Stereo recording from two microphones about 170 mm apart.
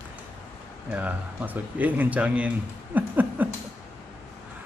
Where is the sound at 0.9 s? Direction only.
10° right (ahead or behind).